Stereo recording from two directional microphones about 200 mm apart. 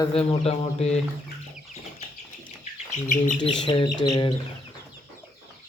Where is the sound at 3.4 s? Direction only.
25° left (ahead or behind).